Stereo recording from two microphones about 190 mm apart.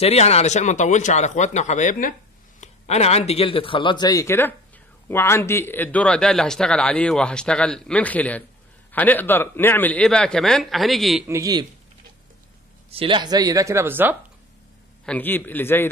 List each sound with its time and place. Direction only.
0.0 s a man's voice: 35° left (ahead or behind); by 11.2 s centre (ahead or behind)
11.2 s a man's voice: 15° right (ahead or behind)
12.9 s speech: 25° right (ahead or behind); by 14.1 s 10° right (ahead or behind)
15.0 s a man's voice: 10° left (ahead or behind)